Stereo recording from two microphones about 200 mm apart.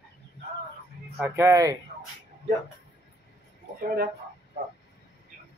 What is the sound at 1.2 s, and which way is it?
Speech, 10° right (ahead or behind).